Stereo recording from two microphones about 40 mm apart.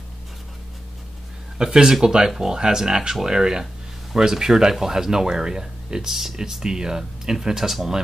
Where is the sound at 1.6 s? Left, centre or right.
Centre.